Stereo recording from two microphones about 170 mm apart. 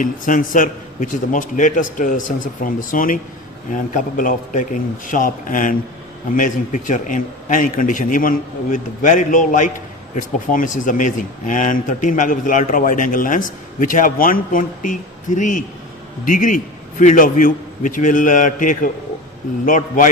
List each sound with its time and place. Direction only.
0.0 s speech: 50° left (ahead or behind)